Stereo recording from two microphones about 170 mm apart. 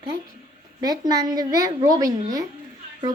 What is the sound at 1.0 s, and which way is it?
Speech, 25° right (ahead or behind).